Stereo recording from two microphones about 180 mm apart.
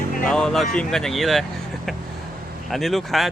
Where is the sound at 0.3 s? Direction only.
5° left (ahead or behind).